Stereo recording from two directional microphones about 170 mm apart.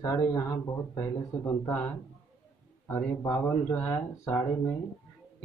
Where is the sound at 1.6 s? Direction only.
10° left (ahead or behind).